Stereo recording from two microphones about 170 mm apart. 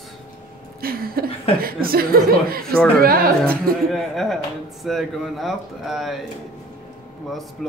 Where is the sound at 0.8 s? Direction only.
60° right (ahead or behind).